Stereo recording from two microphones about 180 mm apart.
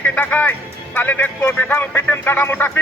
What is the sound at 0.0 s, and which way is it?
Speech, 10° left (ahead or behind).